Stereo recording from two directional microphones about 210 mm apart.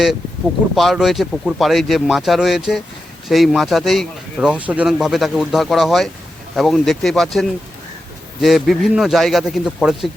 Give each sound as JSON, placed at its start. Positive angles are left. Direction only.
{"t": 0.8, "sound": "speech", "side_deg": 0}